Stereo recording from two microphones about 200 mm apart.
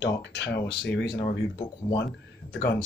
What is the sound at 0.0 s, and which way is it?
Speech, 60° left (ahead or behind).